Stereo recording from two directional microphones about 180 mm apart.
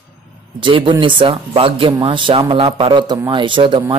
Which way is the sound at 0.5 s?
30° right (ahead or behind).